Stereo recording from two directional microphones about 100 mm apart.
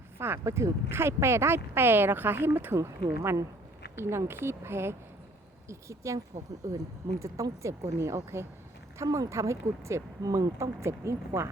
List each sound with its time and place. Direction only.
0.2 s speech: 25° right (ahead or behind)